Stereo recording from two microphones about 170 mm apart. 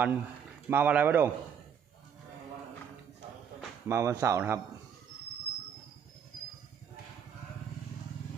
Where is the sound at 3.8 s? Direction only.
15° right (ahead or behind).